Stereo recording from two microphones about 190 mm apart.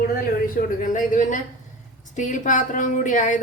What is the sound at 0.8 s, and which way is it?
A woman's voice, 45° left (ahead or behind).